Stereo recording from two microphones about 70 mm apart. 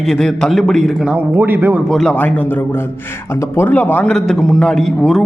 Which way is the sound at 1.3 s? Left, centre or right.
Right.